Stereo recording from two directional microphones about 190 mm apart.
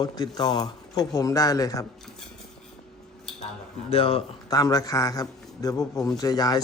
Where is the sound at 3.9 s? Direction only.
30° left (ahead or behind).